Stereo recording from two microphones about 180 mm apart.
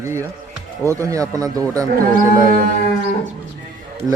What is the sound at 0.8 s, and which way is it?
Speech, 15° right (ahead or behind).